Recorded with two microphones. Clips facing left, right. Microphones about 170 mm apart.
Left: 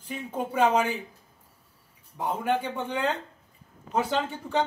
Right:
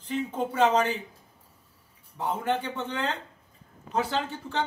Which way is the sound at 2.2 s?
10° left (ahead or behind).